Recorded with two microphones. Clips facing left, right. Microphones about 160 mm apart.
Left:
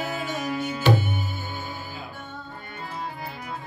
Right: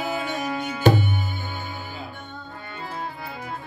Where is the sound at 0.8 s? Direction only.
45° right (ahead or behind).